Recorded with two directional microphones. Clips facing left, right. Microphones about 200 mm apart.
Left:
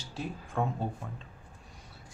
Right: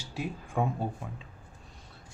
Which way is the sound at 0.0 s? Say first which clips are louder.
Right 2 dB; 10° right (ahead or behind).